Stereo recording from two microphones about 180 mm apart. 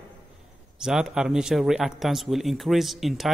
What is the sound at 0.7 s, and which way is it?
Speech, 5° right (ahead or behind).